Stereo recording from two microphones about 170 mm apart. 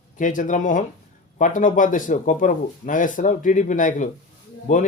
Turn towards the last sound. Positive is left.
turn(degrees=45)  # may be behind; listen again after turning